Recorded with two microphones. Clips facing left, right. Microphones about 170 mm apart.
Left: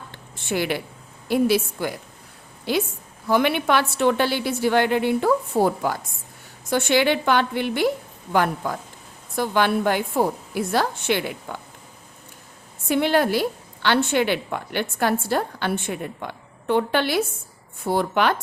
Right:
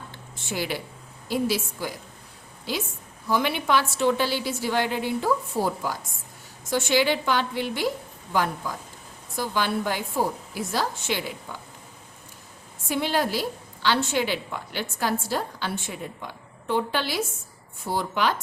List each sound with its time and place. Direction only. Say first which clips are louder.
0.1 s a sound: left 8 dB; 60° left (ahead or behind)
1.3 s a woman's voice: left 6 dB; 60° left (ahead or behind)
12.9 s a woman's voice: left 6 dB; 60° left (ahead or behind)